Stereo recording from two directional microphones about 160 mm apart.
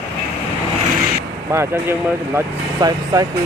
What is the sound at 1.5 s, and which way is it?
Speech, 15° right (ahead or behind).